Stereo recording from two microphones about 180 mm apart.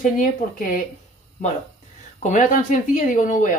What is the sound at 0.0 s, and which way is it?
Speech, 50° left (ahead or behind).